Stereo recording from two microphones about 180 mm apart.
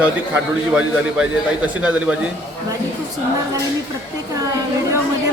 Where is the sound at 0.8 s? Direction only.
5° right (ahead or behind).